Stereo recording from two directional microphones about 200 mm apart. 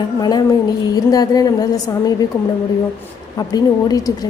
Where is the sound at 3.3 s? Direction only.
20° left (ahead or behind).